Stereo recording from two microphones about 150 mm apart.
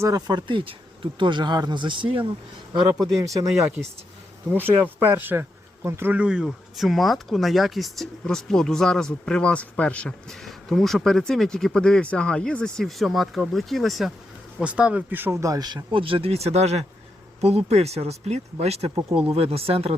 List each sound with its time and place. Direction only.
0.0 s speech: 25° right (ahead or behind)
4.6 s speech: 15° right (ahead or behind); by 20.0 s 40° right (ahead or behind)